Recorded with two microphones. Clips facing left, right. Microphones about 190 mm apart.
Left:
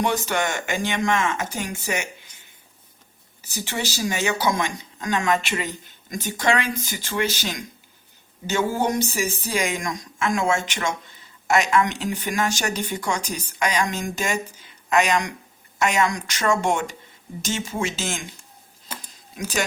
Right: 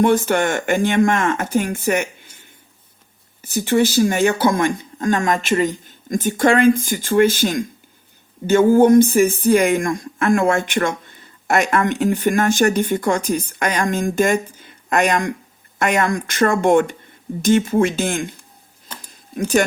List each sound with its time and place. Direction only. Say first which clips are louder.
0.0 s speech: right 8 dB; 50° right (ahead or behind)
3.4 s speech: right 13 dB; 55° right (ahead or behind)
19.1 s a sound: right 10 dB; 55° right (ahead or behind)